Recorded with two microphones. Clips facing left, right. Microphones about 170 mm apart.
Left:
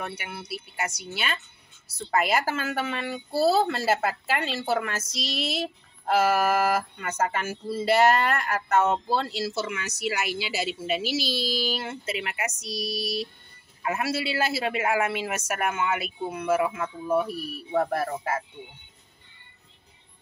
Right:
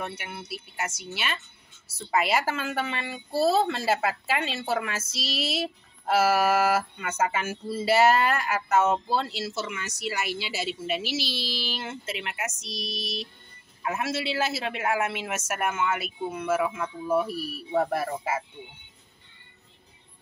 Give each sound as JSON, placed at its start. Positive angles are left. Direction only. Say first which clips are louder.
{"t": 0.0, "sound": "music", "louder": "even", "side_deg": 0}
{"t": 11.4, "sound": "a sound", "louder": "left 6 dB", "side_deg": 45}
{"t": 11.8, "sound": "music", "louder": "left 2 dB", "side_deg": 0}